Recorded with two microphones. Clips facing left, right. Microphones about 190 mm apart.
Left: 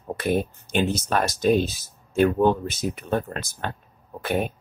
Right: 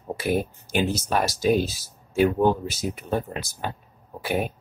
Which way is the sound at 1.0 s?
Centre (ahead or behind).